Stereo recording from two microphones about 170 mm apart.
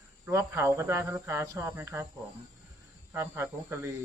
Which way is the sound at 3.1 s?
15° right (ahead or behind).